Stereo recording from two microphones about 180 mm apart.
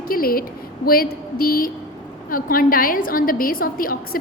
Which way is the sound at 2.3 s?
50° left (ahead or behind).